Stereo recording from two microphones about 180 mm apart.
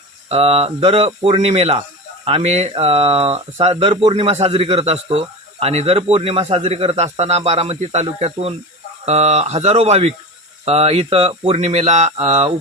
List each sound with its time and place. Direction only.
0.3 s speech: 35° right (ahead or behind)